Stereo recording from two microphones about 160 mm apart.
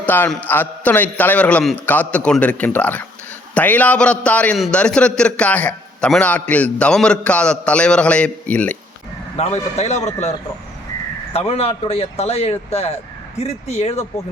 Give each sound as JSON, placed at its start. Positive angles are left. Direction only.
{"t": 0.0, "sound": "a man's voice", "side_deg": 10}
{"t": 9.4, "sound": "a man's voice", "side_deg": 40}
{"t": 11.3, "sound": "speech", "side_deg": 40}